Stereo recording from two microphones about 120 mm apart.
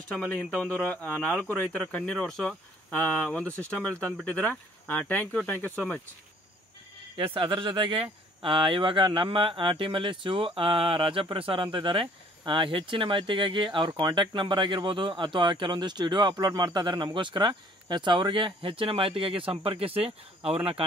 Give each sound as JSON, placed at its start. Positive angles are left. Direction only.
{"t": 0.1, "sound": "speech", "side_deg": 10}
{"t": 7.3, "sound": "speech", "side_deg": -45}